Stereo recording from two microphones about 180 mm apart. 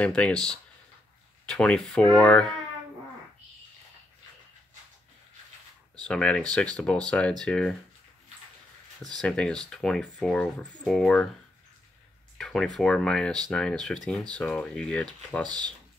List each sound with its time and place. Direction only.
0.0 s speech: 5° left (ahead or behind)
6.0 s speech: 5° left (ahead or behind)
9.2 s speech: 5° left (ahead or behind)
12.4 s speech: centre (ahead or behind)
15.4 s speech: 25° right (ahead or behind)